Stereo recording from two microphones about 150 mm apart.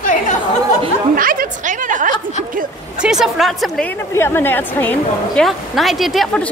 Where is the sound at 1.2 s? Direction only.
70° right (ahead or behind).